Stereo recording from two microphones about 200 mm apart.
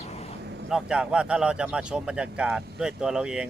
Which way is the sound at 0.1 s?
30° left (ahead or behind).